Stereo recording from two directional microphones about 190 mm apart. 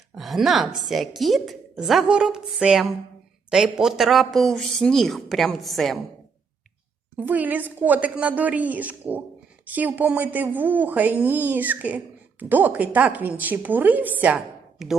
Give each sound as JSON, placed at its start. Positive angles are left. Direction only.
{"t": 0.2, "sound": "a woman's voice", "side_deg": 0}
{"t": 7.2, "sound": "speech", "side_deg": -10}